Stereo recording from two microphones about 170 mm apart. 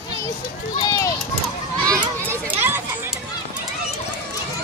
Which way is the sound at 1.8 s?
15° right (ahead or behind).